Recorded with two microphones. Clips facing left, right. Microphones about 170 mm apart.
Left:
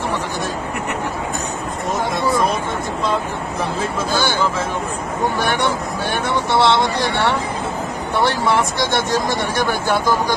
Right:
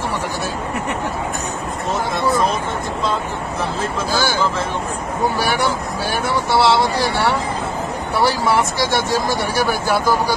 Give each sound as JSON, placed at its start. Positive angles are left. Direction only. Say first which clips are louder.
{"t": 5.4, "sound": "speech", "louder": "even", "side_deg": -5}
{"t": 8.2, "sound": "speech", "louder": "even", "side_deg": -5}